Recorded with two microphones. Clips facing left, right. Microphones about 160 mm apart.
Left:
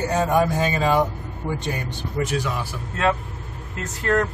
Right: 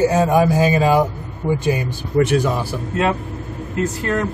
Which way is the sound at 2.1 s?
60° right (ahead or behind).